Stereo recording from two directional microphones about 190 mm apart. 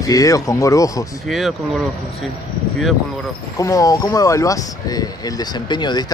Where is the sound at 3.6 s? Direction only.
20° left (ahead or behind).